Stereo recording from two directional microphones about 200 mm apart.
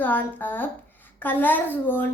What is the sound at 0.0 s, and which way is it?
A child's voice, 10° left (ahead or behind).